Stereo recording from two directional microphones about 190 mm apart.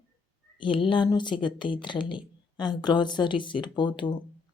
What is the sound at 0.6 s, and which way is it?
A woman's voice, 25° left (ahead or behind).